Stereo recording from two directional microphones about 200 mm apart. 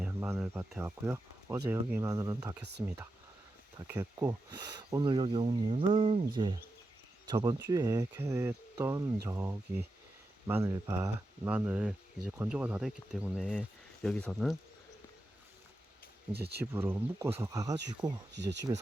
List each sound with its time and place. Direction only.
0.0 s speech: 5° right (ahead or behind)
16.3 s speech: 55° right (ahead or behind)
16.7 s speech: 10° right (ahead or behind)
18.3 s speech: 60° right (ahead or behind)